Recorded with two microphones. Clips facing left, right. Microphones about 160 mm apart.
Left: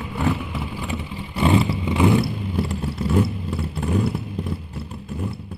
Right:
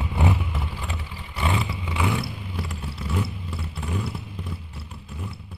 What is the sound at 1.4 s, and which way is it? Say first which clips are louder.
Vehicle: left 9 dB; 35° left (ahead or behind).